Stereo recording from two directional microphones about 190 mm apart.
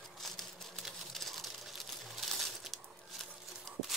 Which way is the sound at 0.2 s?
Centre (ahead or behind).